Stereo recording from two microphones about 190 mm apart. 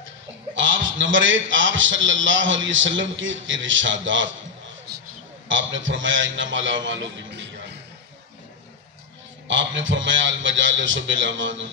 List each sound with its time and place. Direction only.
0.6 s a man's voice: 80° right
5.5 s a man's voice: 85° right
9.5 s a man's voice: 80° right